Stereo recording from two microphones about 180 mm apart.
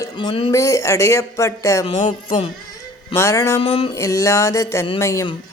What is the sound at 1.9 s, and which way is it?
Music, 40° left (ahead or behind).